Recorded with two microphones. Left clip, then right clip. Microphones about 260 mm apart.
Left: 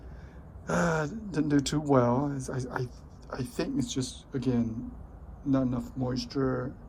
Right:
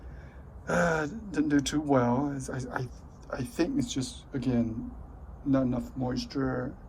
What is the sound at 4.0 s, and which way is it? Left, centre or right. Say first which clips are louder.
Speech: left 1 dB; centre.